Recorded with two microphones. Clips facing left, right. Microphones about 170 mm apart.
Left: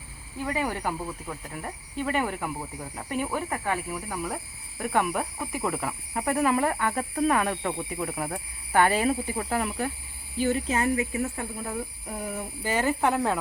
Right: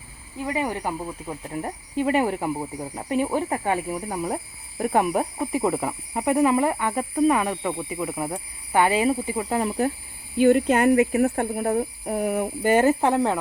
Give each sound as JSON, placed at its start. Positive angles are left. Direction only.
{"t": 0.4, "sound": "speech", "side_deg": -15}
{"t": 1.5, "sound": "speech", "side_deg": -35}
{"t": 2.7, "sound": "speech", "side_deg": -25}
{"t": 6.1, "sound": "speech", "side_deg": -10}
{"t": 9.5, "sound": "speech", "side_deg": -30}
{"t": 10.3, "sound": "speech", "side_deg": -60}
{"t": 13.0, "sound": "speech", "side_deg": -25}